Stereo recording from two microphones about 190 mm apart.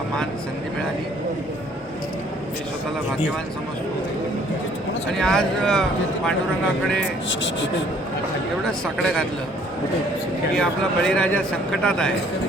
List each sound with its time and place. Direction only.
5.2 s a man's voice: 5° left (ahead or behind)
7.3 s speech: 75° left (ahead or behind)
8.6 s a man's voice: 5° left (ahead or behind)
10.6 s a man's voice: 5° left (ahead or behind)